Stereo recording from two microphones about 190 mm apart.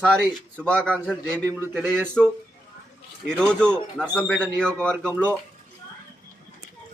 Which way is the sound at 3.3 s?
5° left (ahead or behind).